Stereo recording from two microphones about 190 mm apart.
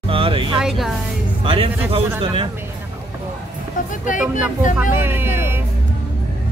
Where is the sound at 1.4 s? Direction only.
30° right (ahead or behind).